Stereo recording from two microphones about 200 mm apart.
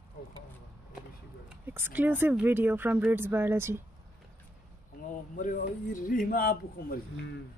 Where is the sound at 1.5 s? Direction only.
10° right (ahead or behind).